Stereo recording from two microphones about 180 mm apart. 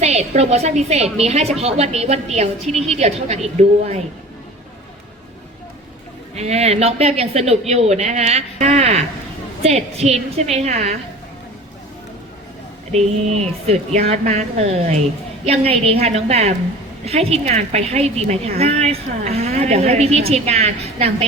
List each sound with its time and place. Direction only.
0.0 s a woman's voice: 40° right (ahead or behind)
6.3 s a woman's voice: 35° right (ahead or behind)
12.9 s a woman's voice: 35° right (ahead or behind)